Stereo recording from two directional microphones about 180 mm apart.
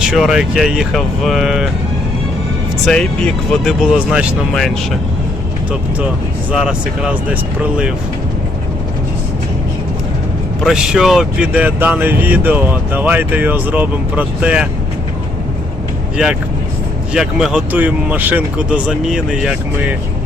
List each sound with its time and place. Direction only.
0.0 s speech: 5° right (ahead or behind)
2.8 s speech: 5° left (ahead or behind)
6.5 s speech: 5° right (ahead or behind)
10.6 s speech: 5° right (ahead or behind)
16.1 s speech: 5° right (ahead or behind)